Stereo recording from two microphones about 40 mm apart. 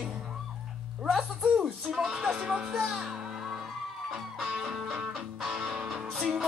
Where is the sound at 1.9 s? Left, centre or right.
Centre.